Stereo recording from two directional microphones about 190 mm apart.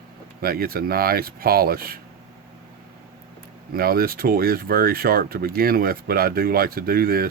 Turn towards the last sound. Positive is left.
turn(degrees=-50)  # may be behind; listen again after turning